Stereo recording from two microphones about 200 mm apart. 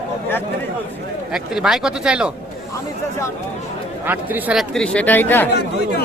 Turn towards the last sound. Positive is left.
turn(degrees=10)  # may be behind; listen again after turning